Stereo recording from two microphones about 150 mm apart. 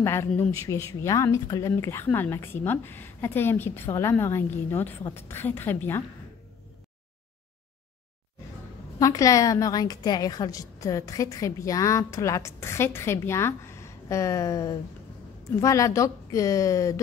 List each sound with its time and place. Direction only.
0.0 s speech: 15° left (ahead or behind)
9.0 s a woman's voice: 20° left (ahead or behind)